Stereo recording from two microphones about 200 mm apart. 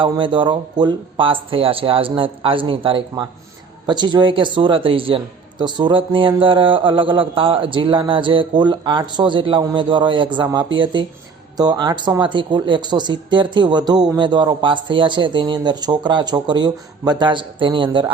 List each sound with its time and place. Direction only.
0.0 s a man's voice: 25° right (ahead or behind)